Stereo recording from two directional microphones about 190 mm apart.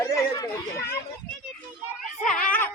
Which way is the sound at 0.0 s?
15° left (ahead or behind).